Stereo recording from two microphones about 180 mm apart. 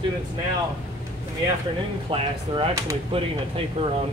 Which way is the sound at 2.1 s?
30° right (ahead or behind).